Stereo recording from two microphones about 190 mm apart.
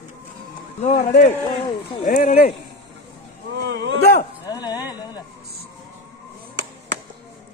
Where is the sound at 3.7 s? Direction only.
70° right (ahead or behind).